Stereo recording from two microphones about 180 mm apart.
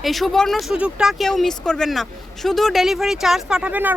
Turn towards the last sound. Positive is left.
turn(degrees=-10)  # may be behind; listen again after turning